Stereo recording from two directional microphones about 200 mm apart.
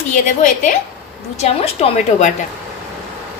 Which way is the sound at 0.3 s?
40° left (ahead or behind).